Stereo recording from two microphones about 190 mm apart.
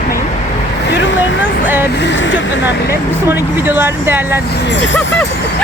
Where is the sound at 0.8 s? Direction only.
65° left (ahead or behind).